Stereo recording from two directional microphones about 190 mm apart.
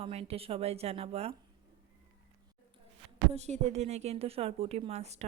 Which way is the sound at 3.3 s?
35° right (ahead or behind).